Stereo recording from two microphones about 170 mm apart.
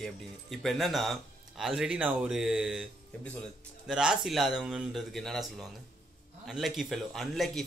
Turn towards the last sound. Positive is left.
turn(degrees=0)  # may be behind; listen again after turning